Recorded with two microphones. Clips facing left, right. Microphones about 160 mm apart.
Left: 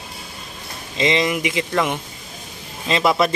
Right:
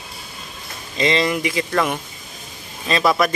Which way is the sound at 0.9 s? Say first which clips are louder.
Even; 20° left (ahead or behind).